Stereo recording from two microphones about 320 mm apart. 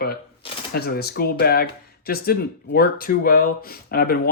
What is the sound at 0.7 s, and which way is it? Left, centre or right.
Speech, left.